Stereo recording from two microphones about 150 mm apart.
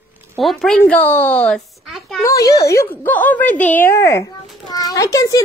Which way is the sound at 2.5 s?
20° left (ahead or behind).